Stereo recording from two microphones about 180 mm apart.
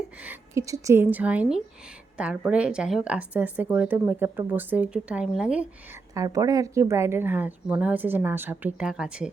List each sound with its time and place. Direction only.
0.2 s a woman's voice: 15° right (ahead or behind)
6.1 s a woman's voice: 20° right (ahead or behind)